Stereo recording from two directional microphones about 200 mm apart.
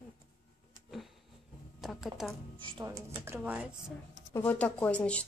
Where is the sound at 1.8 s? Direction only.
Centre (ahead or behind).